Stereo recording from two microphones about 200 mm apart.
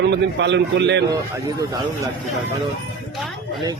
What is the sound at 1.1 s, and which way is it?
Speech, 15° right (ahead or behind).